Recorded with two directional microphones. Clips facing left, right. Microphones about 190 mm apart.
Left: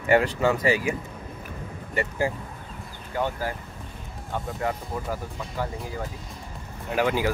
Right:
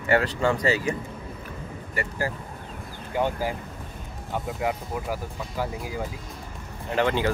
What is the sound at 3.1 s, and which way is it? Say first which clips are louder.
Speech: right 2 dB; 15° right (ahead or behind).